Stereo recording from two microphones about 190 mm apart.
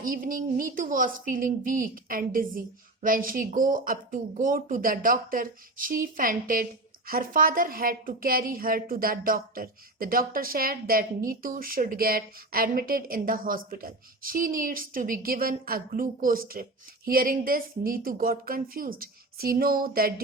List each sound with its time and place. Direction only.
0.0 s a woman's voice: 45° right (ahead or behind)